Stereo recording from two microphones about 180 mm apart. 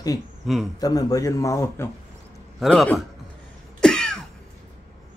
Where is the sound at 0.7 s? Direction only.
20° left (ahead or behind).